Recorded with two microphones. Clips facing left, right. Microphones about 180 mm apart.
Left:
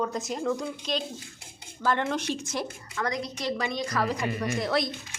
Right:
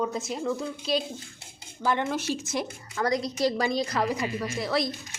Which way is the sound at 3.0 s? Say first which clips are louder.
Right 5 dB; 35° right (ahead or behind).